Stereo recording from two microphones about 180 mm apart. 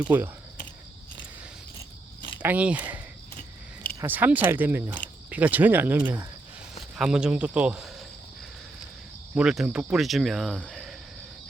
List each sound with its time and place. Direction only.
0.1 s speech: 15° right (ahead or behind)
2.4 s speech: 10° right (ahead or behind)
4.0 s a man's voice: 10° right (ahead or behind)
9.3 s speech: 5° right (ahead or behind)